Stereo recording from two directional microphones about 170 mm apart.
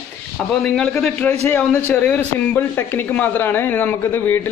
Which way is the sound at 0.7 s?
5° left (ahead or behind).